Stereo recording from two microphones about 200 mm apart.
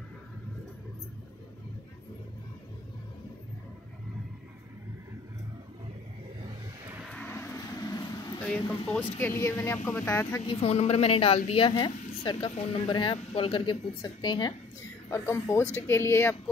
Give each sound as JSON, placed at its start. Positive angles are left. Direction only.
{"t": 7.1, "sound": "vehicle", "side_deg": 5}
{"t": 8.4, "sound": "speech", "side_deg": 5}